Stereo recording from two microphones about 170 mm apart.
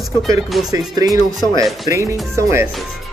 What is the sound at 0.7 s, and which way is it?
Music, 20° right (ahead or behind).